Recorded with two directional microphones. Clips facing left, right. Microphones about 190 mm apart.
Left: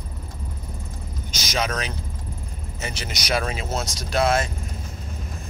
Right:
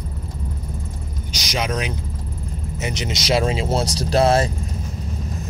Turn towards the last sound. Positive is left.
turn(degrees=-35)  # may be behind; listen again after turning